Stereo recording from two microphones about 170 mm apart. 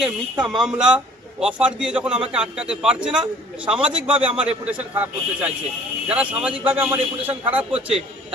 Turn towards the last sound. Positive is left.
turn(degrees=-5)  # may be behind; listen again after turning